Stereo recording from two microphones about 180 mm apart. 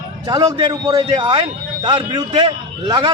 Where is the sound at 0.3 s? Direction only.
20° right (ahead or behind).